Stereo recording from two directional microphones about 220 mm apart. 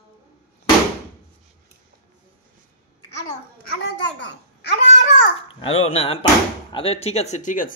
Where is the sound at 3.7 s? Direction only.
50° left (ahead or behind).